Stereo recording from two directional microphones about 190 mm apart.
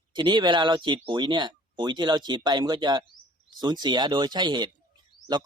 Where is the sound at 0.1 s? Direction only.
25° right (ahead or behind).